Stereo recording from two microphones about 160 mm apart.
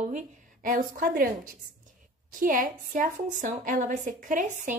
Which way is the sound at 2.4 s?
60° right (ahead or behind).